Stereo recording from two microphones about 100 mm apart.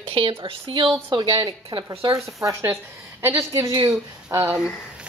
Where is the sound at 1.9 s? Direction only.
35° right (ahead or behind).